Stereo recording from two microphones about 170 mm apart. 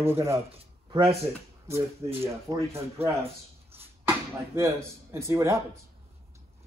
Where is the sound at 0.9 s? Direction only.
30° right (ahead or behind).